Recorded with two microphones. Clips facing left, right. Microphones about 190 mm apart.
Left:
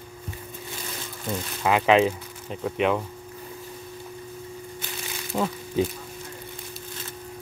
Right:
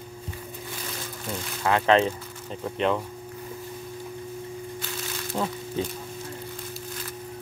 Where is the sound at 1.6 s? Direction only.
10° left (ahead or behind).